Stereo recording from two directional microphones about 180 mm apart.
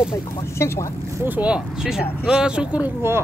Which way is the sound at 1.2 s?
10° right (ahead or behind).